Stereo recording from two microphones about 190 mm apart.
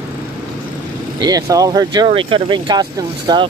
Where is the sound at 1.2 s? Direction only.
20° right (ahead or behind).